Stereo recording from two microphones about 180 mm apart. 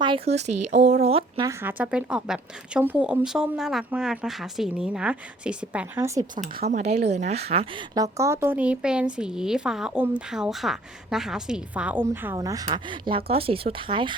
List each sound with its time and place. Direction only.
0.0 s speech: 30° right (ahead or behind)
1.4 s a woman's voice: 15° right (ahead or behind)
6.4 s a woman's voice: 45° right (ahead or behind); by 14.2 s 25° right (ahead or behind)